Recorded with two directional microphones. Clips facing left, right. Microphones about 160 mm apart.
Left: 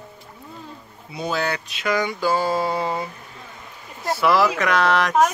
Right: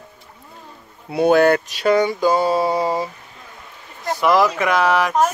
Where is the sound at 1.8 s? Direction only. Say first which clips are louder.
Right 7 dB; 30° right (ahead or behind).